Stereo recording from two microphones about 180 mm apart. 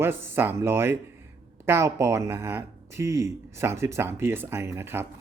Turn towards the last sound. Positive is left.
turn(degrees=-15)  # may be behind; listen again after turning